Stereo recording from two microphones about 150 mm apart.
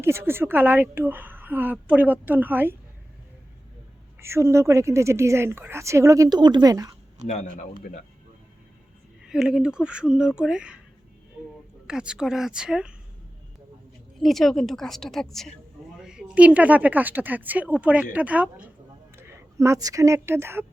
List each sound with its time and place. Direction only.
0.0 s a woman's voice: 15° right (ahead or behind)
4.2 s a woman's voice: 15° right (ahead or behind)
7.3 s a man's voice: 50° left (ahead or behind)
9.2 s speech: 5° right (ahead or behind)
11.9 s speech: 5° right (ahead or behind)
14.2 s a woman's voice: centre (ahead or behind); by 20.7 s 15° right (ahead or behind)